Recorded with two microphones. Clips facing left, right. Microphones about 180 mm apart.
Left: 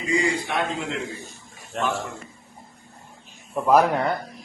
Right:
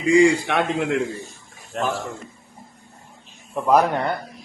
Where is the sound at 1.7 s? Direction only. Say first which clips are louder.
Right 1 dB; centre (ahead or behind).